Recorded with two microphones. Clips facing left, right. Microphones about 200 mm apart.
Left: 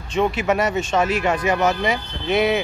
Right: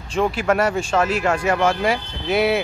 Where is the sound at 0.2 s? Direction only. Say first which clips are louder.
Right 1 dB; 5° left (ahead or behind).